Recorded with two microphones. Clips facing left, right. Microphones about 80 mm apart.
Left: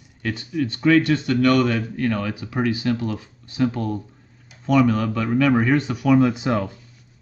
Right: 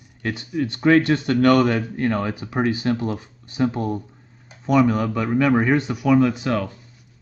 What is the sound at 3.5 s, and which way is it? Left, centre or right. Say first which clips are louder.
Speech: even; centre.